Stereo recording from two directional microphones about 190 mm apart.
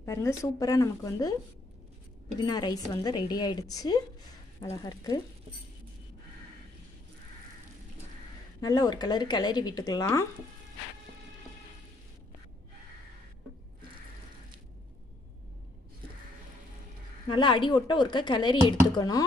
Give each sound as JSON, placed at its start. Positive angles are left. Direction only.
{"t": 0.0, "sound": "speech", "side_deg": 15}
{"t": 2.4, "sound": "a woman's voice", "side_deg": 20}
{"t": 8.5, "sound": "a woman's voice", "side_deg": 20}
{"t": 17.3, "sound": "a woman's voice", "side_deg": 25}